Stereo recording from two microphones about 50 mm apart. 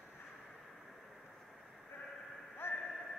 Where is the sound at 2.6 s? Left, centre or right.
Left.